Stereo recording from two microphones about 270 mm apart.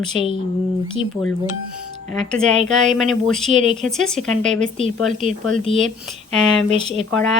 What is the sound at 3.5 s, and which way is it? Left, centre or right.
Speech, right.